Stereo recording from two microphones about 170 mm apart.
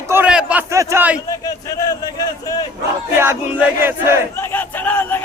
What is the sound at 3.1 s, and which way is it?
Battle cry, 15° right (ahead or behind).